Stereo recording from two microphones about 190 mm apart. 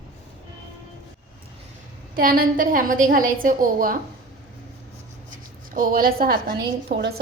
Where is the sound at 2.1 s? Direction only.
50° right (ahead or behind).